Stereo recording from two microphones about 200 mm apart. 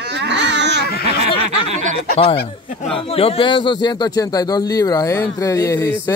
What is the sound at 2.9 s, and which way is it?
Speech, 30° left (ahead or behind).